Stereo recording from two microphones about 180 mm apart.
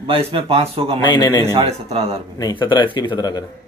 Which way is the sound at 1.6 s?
35° right (ahead or behind).